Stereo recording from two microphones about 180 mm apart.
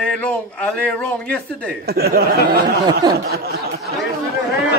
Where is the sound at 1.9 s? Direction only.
60° right (ahead or behind).